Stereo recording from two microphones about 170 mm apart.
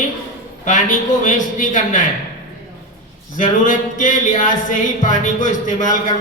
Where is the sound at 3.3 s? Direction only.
50° left (ahead or behind).